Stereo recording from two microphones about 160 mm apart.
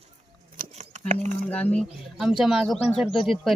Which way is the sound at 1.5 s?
10° left (ahead or behind).